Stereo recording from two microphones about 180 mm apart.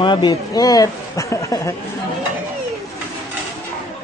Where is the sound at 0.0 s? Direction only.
25° left (ahead or behind).